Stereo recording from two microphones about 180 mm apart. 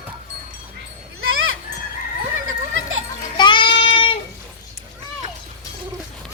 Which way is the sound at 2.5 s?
90° right.